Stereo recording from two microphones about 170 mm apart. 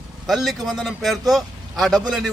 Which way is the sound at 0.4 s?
Centre (ahead or behind).